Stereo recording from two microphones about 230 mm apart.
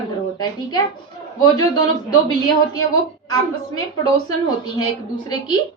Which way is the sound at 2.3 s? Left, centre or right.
Centre.